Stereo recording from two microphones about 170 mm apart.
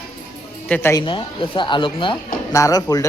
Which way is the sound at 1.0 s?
30° left (ahead or behind).